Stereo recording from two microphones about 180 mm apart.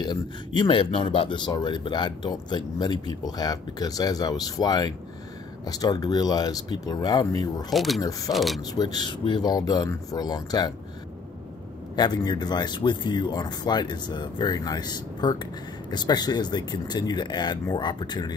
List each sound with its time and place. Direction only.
0.0 s speech: 25° left (ahead or behind)
7.7 s speech: centre (ahead or behind)
8.0 s speech: 20° left (ahead or behind)
8.3 s speech: centre (ahead or behind)
8.7 s speech: 25° left (ahead or behind)
11.9 s speech: 25° left (ahead or behind)